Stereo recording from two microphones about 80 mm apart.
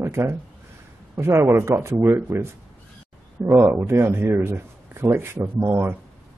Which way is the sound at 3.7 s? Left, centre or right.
Right.